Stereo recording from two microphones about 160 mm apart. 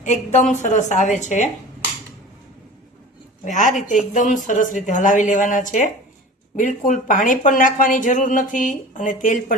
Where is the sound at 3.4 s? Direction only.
55° left (ahead or behind).